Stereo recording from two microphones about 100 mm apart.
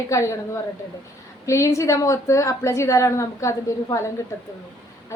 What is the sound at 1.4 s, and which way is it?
A woman's voice, 30° left (ahead or behind).